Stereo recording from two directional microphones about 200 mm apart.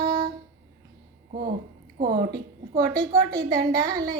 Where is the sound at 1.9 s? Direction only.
45° right (ahead or behind).